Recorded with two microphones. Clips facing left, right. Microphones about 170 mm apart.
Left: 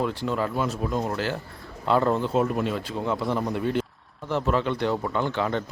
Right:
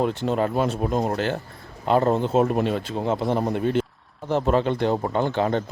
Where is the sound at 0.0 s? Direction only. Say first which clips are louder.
Right 4 dB; 20° right (ahead or behind).